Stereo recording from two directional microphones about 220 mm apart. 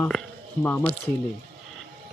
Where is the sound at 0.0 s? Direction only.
5° left (ahead or behind).